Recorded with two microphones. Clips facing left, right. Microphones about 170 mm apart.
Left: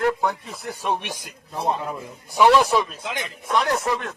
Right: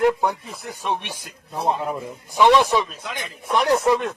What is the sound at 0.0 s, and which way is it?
Speech, 15° right (ahead or behind).